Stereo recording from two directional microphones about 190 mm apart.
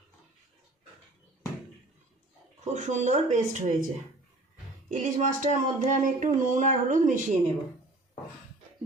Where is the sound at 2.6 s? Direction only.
35° right (ahead or behind).